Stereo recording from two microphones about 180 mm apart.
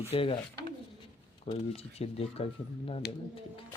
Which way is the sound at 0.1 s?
30° left (ahead or behind).